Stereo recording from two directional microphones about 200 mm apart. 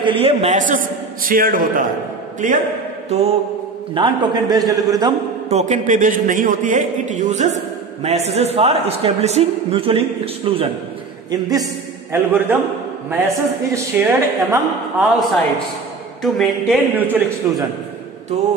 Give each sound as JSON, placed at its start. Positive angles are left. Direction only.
{"t": 0.0, "sound": "a man's voice", "side_deg": -25}
{"t": 5.5, "sound": "a man's voice", "side_deg": -35}
{"t": 11.2, "sound": "a man's voice", "side_deg": -20}